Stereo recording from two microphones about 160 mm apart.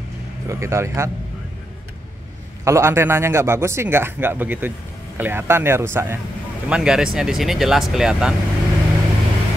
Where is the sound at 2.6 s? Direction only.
15° right (ahead or behind).